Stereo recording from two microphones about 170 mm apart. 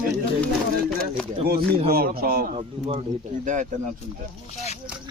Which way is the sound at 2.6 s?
35° right (ahead or behind).